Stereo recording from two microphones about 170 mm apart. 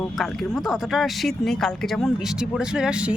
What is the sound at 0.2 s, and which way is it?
Speech, centre (ahead or behind).